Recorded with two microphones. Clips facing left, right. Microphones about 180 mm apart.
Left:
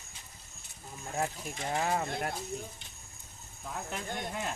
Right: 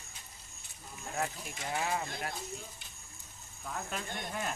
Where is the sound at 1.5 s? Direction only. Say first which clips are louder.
Left 3 dB; 35° left (ahead or behind).